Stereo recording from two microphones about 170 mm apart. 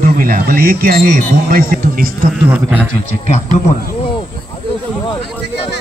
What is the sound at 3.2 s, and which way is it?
Speech, 50° left (ahead or behind).